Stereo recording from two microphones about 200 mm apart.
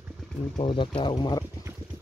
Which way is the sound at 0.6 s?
25° left (ahead or behind).